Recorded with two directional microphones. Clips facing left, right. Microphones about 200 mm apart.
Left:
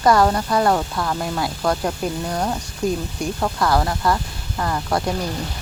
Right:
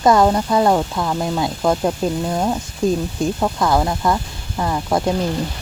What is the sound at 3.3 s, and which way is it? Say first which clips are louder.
Speech: even; 15° right (ahead or behind).